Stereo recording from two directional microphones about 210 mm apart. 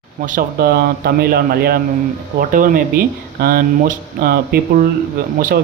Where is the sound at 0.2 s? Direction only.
40° right (ahead or behind).